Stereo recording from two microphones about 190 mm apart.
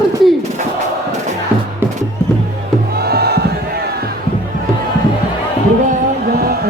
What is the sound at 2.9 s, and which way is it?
Music, 55° right (ahead or behind).